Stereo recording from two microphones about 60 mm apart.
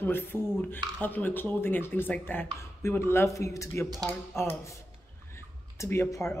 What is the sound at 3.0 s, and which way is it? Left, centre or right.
Speech, left.